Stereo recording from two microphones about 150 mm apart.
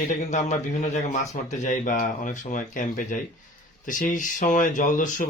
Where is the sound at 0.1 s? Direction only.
55° left (ahead or behind).